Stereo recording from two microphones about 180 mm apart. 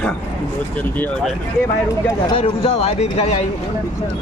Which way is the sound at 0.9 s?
10° left (ahead or behind).